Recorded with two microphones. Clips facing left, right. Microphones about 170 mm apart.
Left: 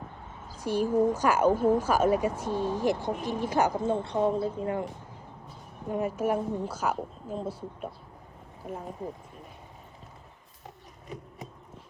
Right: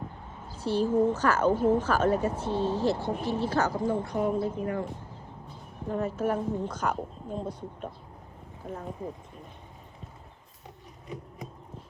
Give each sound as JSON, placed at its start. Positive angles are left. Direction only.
{"t": 0.6, "sound": "speech", "side_deg": 15}
{"t": 5.9, "sound": "speech", "side_deg": 10}